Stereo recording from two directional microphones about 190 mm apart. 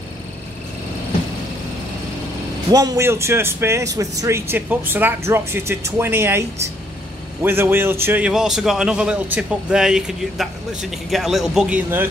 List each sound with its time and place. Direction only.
2.7 s a man's voice: 20° right (ahead or behind)